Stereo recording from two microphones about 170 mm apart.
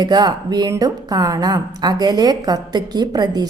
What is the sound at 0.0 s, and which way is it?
A woman's voice, 25° right (ahead or behind).